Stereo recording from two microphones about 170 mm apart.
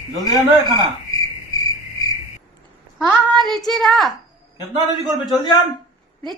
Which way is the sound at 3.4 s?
Centre (ahead or behind).